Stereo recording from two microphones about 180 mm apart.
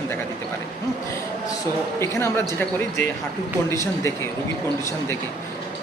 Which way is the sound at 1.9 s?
15° left (ahead or behind).